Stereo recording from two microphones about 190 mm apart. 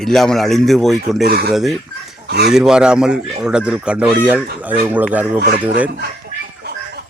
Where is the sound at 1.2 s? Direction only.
55° right (ahead or behind).